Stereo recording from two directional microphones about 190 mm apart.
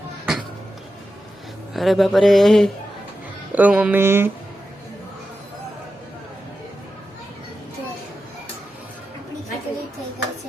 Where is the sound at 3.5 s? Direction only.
10° right (ahead or behind).